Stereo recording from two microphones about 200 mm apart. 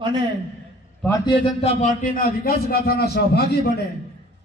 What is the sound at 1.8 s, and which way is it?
A man's voice, 40° left (ahead or behind).